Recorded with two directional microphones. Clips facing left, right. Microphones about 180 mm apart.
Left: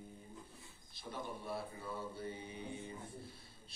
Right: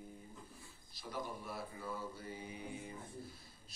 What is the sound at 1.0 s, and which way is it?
Mantra, 25° left (ahead or behind).